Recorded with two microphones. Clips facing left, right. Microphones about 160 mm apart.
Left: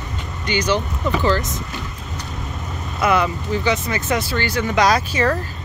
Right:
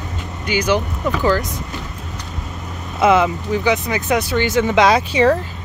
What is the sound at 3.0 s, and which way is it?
Speech, 20° right (ahead or behind).